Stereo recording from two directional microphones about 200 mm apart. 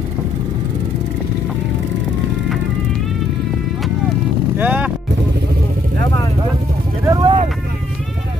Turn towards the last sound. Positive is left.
turn(degrees=-25)  # may be behind; listen again after turning